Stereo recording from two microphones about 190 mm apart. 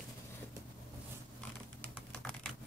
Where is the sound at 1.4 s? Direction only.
5° left (ahead or behind).